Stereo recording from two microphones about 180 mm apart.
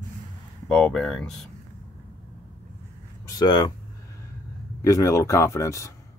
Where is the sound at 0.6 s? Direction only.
5° left (ahead or behind).